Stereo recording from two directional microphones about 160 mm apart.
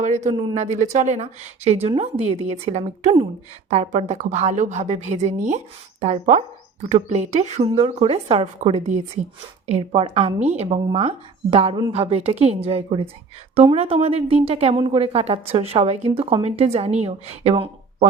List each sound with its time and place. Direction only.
0.0 s a woman's voice: 50° right (ahead or behind)
7.6 s a woman's voice: 35° right (ahead or behind)